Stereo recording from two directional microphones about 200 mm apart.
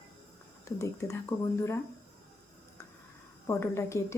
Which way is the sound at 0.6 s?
15° left (ahead or behind).